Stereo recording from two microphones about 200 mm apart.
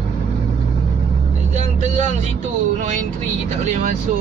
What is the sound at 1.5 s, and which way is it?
Vehicle, 35° right (ahead or behind).